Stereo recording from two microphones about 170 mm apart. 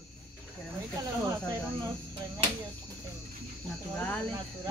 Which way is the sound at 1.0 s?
15° right (ahead or behind).